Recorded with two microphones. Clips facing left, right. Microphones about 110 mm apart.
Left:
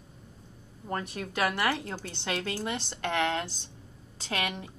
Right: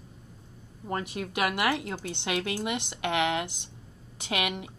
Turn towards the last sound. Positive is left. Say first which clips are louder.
# right 2 dB
turn(degrees=-15)  # may be behind; listen again after turning